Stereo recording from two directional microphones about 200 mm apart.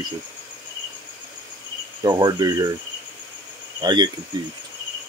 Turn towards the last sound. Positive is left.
turn(degrees=-20)  # may be behind; listen again after turning